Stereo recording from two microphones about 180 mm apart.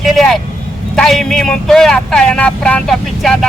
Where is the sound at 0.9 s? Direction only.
Centre (ahead or behind).